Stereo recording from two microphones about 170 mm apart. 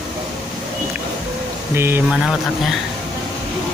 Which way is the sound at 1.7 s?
15° right (ahead or behind).